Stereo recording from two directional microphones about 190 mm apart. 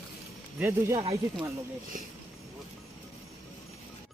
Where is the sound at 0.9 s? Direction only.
30° right (ahead or behind).